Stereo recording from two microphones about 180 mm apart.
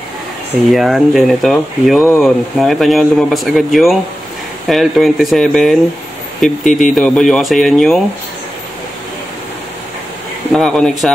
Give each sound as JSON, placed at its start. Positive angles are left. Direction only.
{"t": 0.7, "sound": "speech", "side_deg": 0}
{"t": 6.6, "sound": "speech", "side_deg": 45}
{"t": 7.0, "sound": "speech", "side_deg": 5}
{"t": 10.5, "sound": "speech", "side_deg": 5}